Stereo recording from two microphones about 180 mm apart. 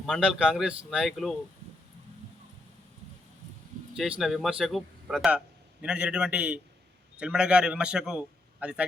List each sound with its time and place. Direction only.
0.0 s a man's voice: centre (ahead or behind)
4.2 s a man's voice: centre (ahead or behind)